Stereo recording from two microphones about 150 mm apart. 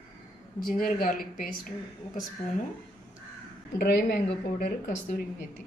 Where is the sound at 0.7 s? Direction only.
75° left (ahead or behind).